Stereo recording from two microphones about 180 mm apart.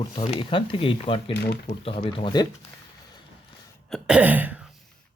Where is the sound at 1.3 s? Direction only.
70° left (ahead or behind).